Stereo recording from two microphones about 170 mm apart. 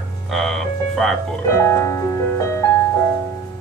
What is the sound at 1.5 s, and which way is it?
Music, 15° left (ahead or behind).